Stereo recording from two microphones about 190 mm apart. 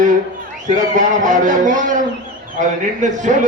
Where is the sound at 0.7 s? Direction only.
40° right (ahead or behind).